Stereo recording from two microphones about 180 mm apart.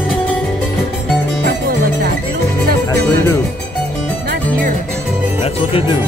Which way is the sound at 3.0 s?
15° left (ahead or behind).